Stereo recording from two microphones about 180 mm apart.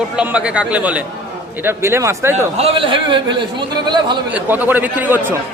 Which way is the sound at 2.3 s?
30° right (ahead or behind).